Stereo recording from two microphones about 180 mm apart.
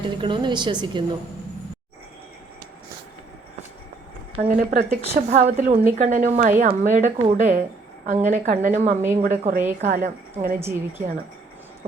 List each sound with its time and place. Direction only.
0.0 s a woman's voice: 25° right (ahead or behind)
4.4 s a woman's voice: 45° right (ahead or behind)
10.6 s a woman's voice: 15° right (ahead or behind)